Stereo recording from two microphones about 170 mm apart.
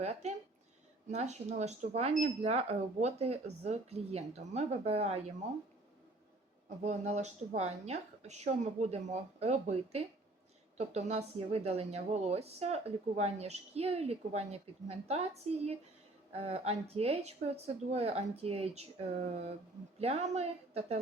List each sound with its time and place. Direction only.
0.0 s a woman's voice: 40° right (ahead or behind)
6.8 s a woman's voice: 40° right (ahead or behind)